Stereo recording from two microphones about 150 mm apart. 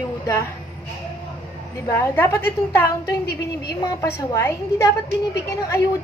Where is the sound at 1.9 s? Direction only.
15° left (ahead or behind).